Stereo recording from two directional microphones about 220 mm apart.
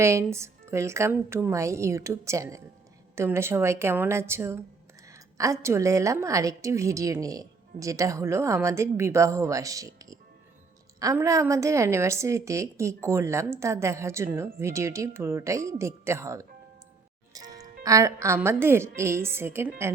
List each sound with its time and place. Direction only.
0.0 s a woman's voice: 10° right (ahead or behind)
17.3 s music: 15° right (ahead or behind)
17.8 s a woman's voice: 15° right (ahead or behind)